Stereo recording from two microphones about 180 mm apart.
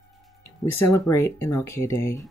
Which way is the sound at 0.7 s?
15° left (ahead or behind).